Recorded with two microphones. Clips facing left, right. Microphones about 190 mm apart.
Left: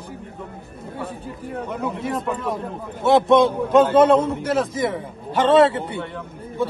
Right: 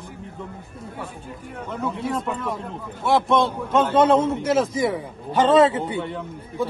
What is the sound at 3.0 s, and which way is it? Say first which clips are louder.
Speech: left 5 dB; 20° left (ahead or behind).